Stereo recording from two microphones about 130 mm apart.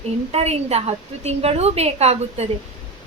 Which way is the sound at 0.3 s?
50° right (ahead or behind).